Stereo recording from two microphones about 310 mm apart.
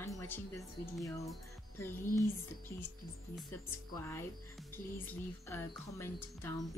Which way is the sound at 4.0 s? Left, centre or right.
Centre.